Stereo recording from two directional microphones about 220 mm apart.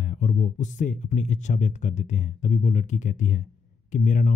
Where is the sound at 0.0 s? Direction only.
35° left (ahead or behind).